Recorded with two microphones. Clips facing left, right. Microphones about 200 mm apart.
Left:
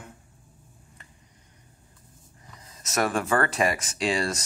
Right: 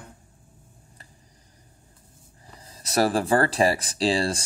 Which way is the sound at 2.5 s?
35° right (ahead or behind).